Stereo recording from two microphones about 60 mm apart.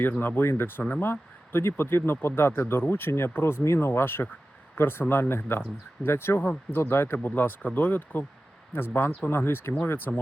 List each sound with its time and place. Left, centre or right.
0.2 s speech: left
1.0 s speech: left